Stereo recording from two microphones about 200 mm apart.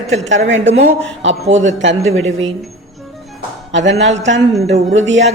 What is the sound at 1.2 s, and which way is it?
Speech, 35° right (ahead or behind).